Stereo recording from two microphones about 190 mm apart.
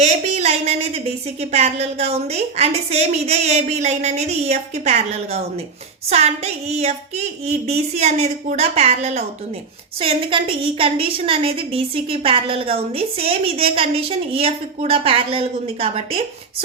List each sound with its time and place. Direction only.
0.0 s a woman's voice: 35° right (ahead or behind)